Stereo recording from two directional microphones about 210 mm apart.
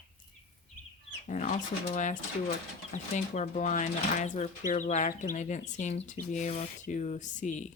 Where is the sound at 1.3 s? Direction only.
40° left (ahead or behind).